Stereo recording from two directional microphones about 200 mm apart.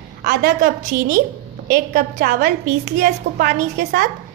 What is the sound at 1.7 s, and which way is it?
A woman's voice, 45° right (ahead or behind).